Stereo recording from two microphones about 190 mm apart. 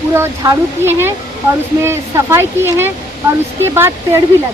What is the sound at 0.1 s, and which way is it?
Speech, 15° right (ahead or behind).